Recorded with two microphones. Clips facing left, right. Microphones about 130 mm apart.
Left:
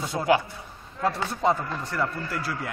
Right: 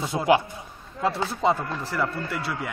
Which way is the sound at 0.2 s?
10° right (ahead or behind).